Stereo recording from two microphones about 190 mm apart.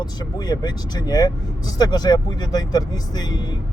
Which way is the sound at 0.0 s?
20° left (ahead or behind).